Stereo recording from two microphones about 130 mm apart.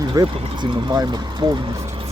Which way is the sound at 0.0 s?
30° right (ahead or behind).